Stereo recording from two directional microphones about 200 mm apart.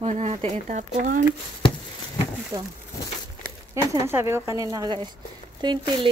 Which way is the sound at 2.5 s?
15° right (ahead or behind).